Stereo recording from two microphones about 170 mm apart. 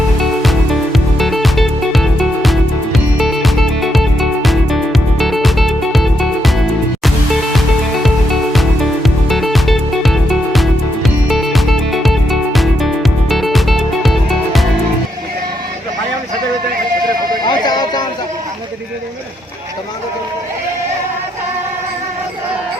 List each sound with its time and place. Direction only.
0.2 s music: centre (ahead or behind)
17.4 s music: 25° left (ahead or behind)